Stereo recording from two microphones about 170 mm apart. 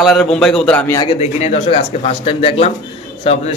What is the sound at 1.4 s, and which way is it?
Speech, 35° left (ahead or behind).